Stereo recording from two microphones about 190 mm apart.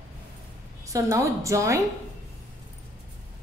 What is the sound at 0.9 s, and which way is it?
Speech, 15° right (ahead or behind).